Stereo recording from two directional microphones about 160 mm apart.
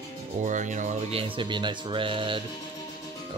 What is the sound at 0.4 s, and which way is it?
Speech, 50° right (ahead or behind).